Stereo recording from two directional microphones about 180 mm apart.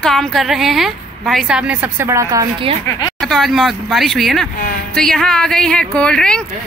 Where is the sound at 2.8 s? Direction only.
20° left (ahead or behind).